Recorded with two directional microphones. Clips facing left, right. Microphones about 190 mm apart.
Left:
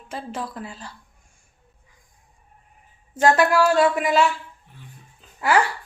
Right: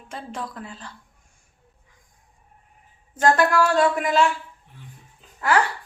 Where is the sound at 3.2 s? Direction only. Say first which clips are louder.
Left 1 dB; 5° left (ahead or behind).